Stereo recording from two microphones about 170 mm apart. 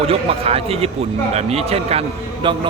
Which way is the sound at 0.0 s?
35° right (ahead or behind).